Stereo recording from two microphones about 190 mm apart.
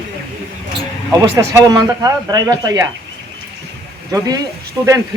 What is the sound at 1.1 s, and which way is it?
Speech, 15° right (ahead or behind).